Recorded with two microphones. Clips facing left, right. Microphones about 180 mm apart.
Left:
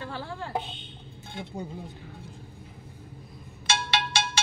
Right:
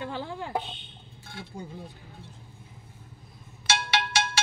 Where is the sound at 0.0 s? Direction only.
20° right (ahead or behind).